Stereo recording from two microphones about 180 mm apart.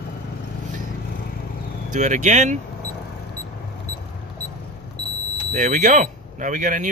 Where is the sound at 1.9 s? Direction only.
45° right (ahead or behind).